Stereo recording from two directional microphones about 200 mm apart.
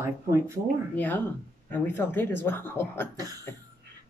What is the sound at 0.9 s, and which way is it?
Speech, 10° left (ahead or behind).